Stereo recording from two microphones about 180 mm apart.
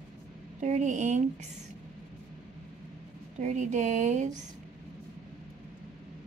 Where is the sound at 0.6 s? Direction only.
40° right (ahead or behind).